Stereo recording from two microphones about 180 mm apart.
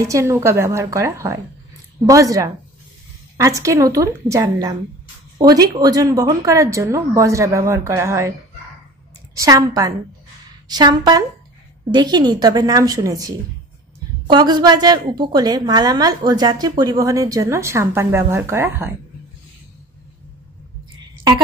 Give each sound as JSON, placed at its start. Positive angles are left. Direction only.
{"t": 0.0, "sound": "a woman's voice", "side_deg": -15}
{"t": 9.3, "sound": "a woman's voice", "side_deg": -20}